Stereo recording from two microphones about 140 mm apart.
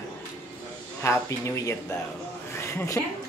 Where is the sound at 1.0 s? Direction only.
20° left (ahead or behind).